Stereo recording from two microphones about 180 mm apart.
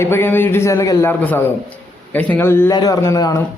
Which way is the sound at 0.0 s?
15° left (ahead or behind).